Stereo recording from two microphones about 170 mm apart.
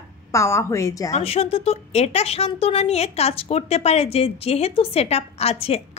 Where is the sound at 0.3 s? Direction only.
15° left (ahead or behind).